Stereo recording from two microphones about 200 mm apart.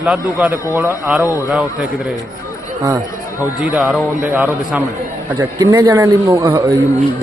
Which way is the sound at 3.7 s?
5° right (ahead or behind).